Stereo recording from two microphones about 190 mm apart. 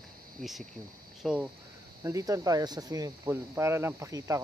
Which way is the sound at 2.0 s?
15° right (ahead or behind).